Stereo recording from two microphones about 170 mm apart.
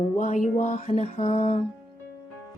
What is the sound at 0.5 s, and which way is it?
Speech, 45° left (ahead or behind).